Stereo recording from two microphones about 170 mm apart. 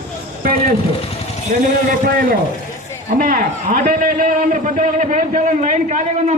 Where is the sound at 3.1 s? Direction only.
55° right (ahead or behind).